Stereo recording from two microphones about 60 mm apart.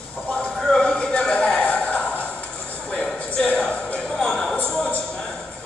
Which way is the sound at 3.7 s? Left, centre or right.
Centre.